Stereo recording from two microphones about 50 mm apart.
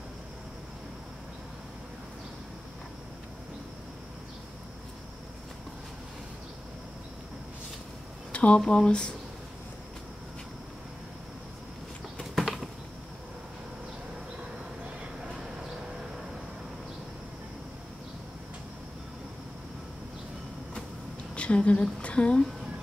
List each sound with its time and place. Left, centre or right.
8.3 s speech: left
12.2 s bird flight: centre
21.4 s a woman's voice: left